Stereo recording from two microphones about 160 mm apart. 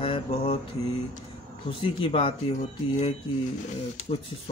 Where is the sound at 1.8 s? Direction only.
35° left (ahead or behind).